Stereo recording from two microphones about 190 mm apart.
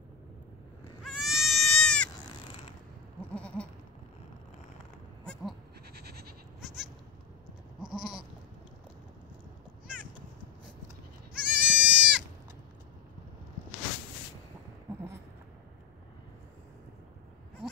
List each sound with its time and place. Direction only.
1.0 s goat: centre (ahead or behind)
3.2 s goat: 5° left (ahead or behind)
5.2 s bleat: 5° left (ahead or behind)
5.9 s goat: 55° right (ahead or behind)
6.6 s goat: centre (ahead or behind)
11.3 s goat: 5° right (ahead or behind)